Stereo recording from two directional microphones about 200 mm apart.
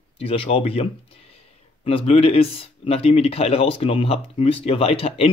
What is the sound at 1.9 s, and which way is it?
Speech, 30° left (ahead or behind).